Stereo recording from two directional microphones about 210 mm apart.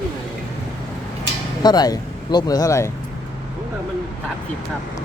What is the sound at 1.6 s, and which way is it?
Speech, 20° left (ahead or behind).